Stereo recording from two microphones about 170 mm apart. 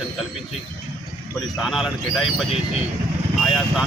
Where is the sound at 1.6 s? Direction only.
Centre (ahead or behind).